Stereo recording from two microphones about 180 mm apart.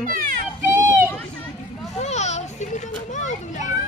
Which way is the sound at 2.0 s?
40° left (ahead or behind).